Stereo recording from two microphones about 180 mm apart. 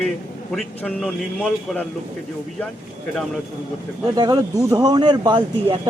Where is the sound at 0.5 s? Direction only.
Centre (ahead or behind).